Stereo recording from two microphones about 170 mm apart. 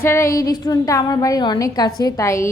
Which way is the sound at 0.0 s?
15° left (ahead or behind).